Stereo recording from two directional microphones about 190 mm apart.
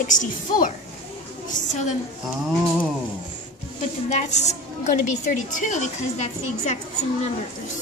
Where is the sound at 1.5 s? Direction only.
40° left (ahead or behind).